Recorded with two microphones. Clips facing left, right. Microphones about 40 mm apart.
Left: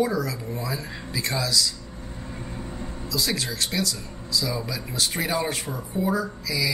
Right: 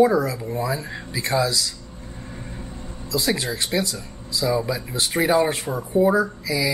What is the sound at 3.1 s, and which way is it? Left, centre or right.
Speech, centre.